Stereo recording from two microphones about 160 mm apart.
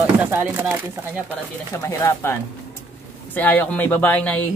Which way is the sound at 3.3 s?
10° left (ahead or behind).